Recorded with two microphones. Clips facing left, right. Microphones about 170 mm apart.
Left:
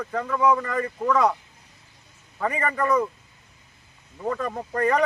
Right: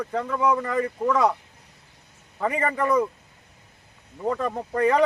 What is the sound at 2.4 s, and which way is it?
Speech, 10° right (ahead or behind).